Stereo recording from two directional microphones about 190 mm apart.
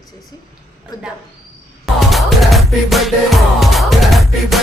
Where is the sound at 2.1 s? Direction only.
Centre (ahead or behind).